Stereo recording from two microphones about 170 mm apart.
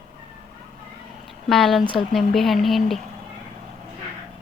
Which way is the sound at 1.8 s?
30° left (ahead or behind).